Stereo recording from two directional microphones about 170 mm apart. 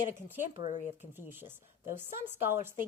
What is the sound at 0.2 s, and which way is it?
A woman's voice, 10° right (ahead or behind).